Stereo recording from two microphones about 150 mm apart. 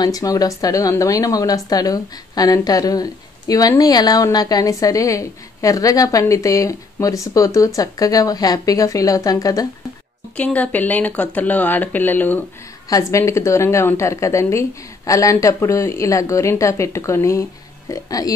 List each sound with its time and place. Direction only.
0.0 s a woman's voice: 25° left (ahead or behind)
10.3 s a woman's voice: 10° left (ahead or behind)